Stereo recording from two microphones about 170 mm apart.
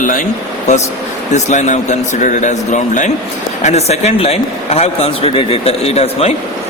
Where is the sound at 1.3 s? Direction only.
45° left (ahead or behind).